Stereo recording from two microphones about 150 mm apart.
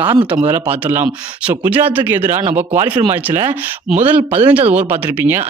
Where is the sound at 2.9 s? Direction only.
20° right (ahead or behind).